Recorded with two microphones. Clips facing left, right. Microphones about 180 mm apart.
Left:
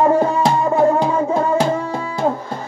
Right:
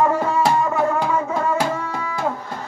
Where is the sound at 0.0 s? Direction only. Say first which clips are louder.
Left 4 dB; 30° left (ahead or behind).